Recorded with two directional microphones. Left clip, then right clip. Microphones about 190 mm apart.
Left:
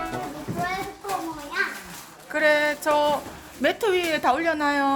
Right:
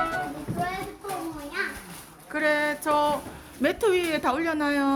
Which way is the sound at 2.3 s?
Centre (ahead or behind).